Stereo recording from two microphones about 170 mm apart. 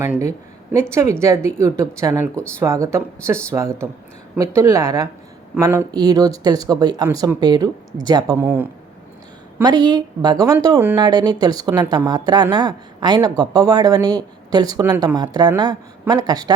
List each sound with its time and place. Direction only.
0.0 s a woman's voice: 15° right (ahead or behind)
8.4 s speech: 10° right (ahead or behind)
9.6 s a woman's voice: 25° right (ahead or behind)